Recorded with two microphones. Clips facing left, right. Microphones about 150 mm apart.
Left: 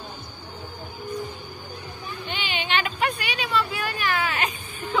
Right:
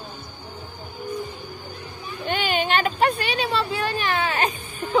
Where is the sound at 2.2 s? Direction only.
45° right (ahead or behind).